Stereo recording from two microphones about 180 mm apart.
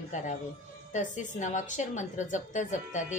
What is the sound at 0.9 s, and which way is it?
A woman's voice, 45° left (ahead or behind).